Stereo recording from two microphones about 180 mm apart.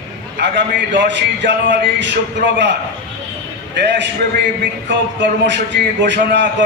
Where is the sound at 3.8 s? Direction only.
75° right (ahead or behind).